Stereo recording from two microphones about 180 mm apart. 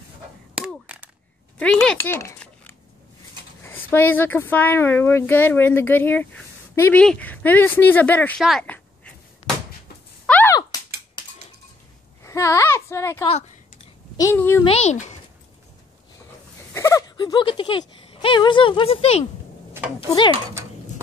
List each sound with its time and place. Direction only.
0.6 s a sound: 5° right (ahead or behind)
1.6 s speech: 5° left (ahead or behind)
2.0 s typing: 15° left (ahead or behind)
3.6 s speech: 10° left (ahead or behind)
10.2 s a sound: 10° left (ahead or behind)
11.2 s a sound: 25° left (ahead or behind)
14.1 s speech: 15° left (ahead or behind)
14.6 s speech: 35° left (ahead or behind)
16.7 s speech: 15° left (ahead or behind); by 19.2 s 35° left (ahead or behind)